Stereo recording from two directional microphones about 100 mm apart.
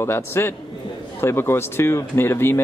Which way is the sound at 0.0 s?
25° left (ahead or behind).